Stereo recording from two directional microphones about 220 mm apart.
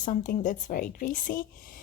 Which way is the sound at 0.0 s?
35° left (ahead or behind).